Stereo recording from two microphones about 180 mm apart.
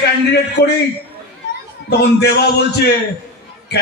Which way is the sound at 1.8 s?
65° left (ahead or behind).